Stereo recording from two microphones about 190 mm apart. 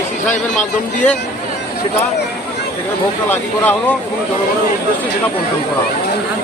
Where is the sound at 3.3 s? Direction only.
10° left (ahead or behind).